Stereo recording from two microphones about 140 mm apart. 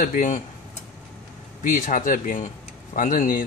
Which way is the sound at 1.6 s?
70° left (ahead or behind).